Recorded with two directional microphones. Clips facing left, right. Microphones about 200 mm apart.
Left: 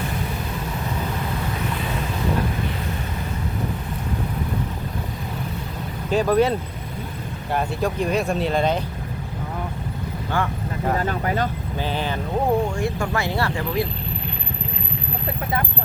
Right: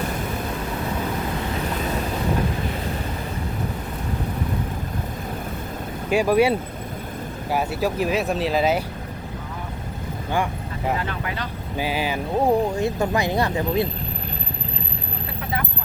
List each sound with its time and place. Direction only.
6.1 s speech: 10° right (ahead or behind)
10.3 s speech: 15° right (ahead or behind)
11.0 s speech: 40° left (ahead or behind)
11.8 s speech: 10° right (ahead or behind)
12.7 s speech: 20° right (ahead or behind)